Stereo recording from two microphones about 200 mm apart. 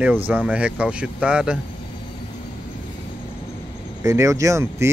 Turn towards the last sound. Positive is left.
turn(degrees=-15)  # may be behind; listen again after turning